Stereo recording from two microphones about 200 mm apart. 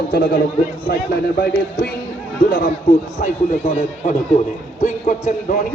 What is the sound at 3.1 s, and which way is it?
A man's voice, 35° left (ahead or behind).